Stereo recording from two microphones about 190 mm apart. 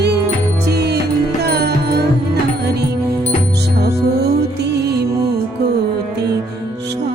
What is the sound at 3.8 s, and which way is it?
Music, 60° right (ahead or behind).